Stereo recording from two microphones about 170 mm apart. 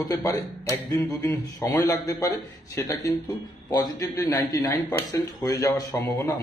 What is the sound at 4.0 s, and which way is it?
A man's voice, 10° left (ahead or behind).